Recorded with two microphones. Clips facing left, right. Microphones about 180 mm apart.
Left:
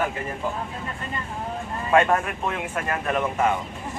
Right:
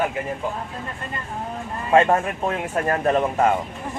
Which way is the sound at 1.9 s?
30° right (ahead or behind).